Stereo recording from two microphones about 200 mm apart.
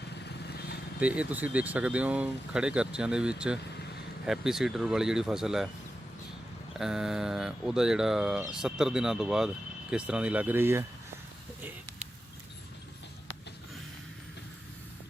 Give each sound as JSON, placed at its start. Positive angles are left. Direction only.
{"t": 0.3, "sound": "vehicle", "side_deg": 55}
{"t": 0.9, "sound": "speech", "side_deg": -5}
{"t": 6.7, "sound": "speech", "side_deg": 0}